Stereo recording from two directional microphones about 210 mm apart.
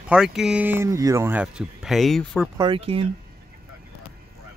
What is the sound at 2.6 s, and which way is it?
Speech, 25° right (ahead or behind).